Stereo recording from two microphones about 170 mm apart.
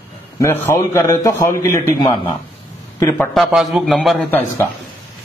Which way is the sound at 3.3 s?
Centre (ahead or behind).